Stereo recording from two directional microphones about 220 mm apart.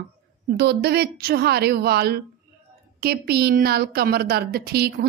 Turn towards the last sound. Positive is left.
turn(degrees=-45)  # may be behind; listen again after turning